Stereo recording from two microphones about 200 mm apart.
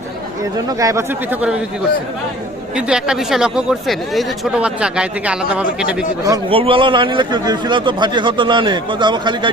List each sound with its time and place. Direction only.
0.5 s speech: 15° right (ahead or behind)
2.7 s speech: 5° right (ahead or behind)
6.2 s a man's voice: 20° right (ahead or behind)